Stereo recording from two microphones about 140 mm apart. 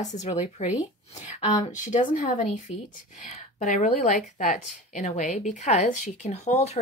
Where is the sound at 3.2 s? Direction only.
50° left (ahead or behind).